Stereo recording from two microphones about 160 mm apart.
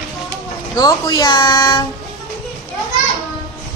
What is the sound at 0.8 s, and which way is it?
Speech, 25° left (ahead or behind).